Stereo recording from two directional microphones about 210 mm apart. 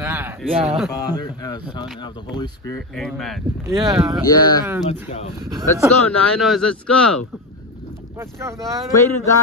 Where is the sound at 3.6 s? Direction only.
20° right (ahead or behind).